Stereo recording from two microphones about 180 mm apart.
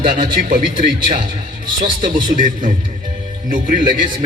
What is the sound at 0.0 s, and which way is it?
Speech, 50° right (ahead or behind).